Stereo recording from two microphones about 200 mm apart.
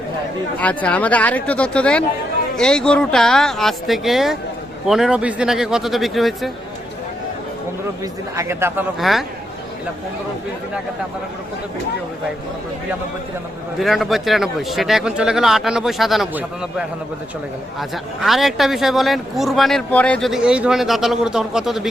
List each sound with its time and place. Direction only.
0.6 s speech: 5° left (ahead or behind)
8.4 s a man's voice: 15° right (ahead or behind)
9.0 s speech: centre (ahead or behind)
13.7 s speech: centre (ahead or behind)